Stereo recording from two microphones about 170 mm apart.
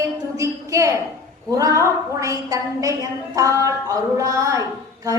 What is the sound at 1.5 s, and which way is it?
A woman's voice, 20° right (ahead or behind).